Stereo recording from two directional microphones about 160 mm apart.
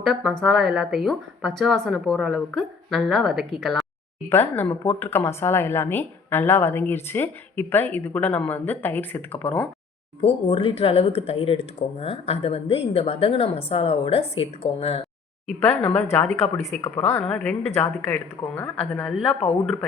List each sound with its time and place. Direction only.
0.0 s a woman's voice: centre (ahead or behind)
4.3 s speech: 10° left (ahead or behind)
10.2 s speech: 35° left (ahead or behind)
15.8 s speech: 10° left (ahead or behind)